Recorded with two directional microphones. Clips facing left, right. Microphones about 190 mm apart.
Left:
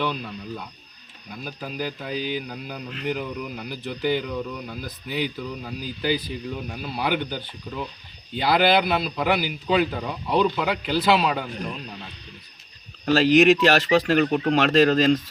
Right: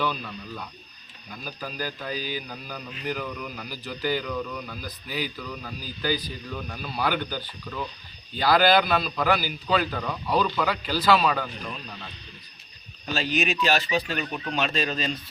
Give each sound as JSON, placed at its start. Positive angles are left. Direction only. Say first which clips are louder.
{"t": 0.0, "sound": "a man's voice", "louder": "left 2 dB", "side_deg": 20}
{"t": 3.1, "sound": "a man's voice", "louder": "left 3 dB", "side_deg": 20}
{"t": 13.1, "sound": "speech", "louder": "left 11 dB", "side_deg": 90}